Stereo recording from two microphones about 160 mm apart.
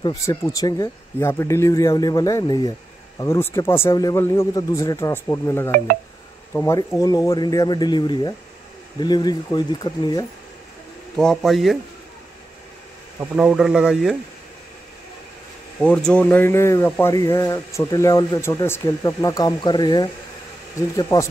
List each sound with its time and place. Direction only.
0.0 s speech: 25° left (ahead or behind)
11.1 s speech: centre (ahead or behind)
13.2 s speech: 10° right (ahead or behind)
15.8 s speech: 5° left (ahead or behind)